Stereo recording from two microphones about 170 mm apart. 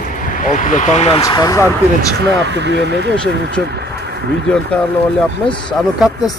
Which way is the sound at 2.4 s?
90° right.